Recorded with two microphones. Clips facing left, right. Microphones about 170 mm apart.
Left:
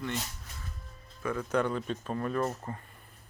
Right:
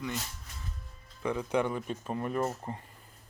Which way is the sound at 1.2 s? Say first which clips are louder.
Even; 15° right (ahead or behind).